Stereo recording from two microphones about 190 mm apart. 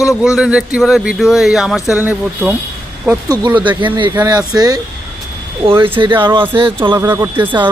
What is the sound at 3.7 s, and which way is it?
Speech, 25° right (ahead or behind).